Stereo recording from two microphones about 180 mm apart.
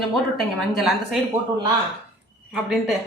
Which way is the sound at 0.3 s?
Centre (ahead or behind).